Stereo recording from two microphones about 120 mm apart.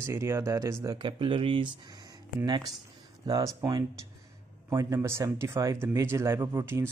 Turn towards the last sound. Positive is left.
turn(degrees=-20)  # may be behind; listen again after turning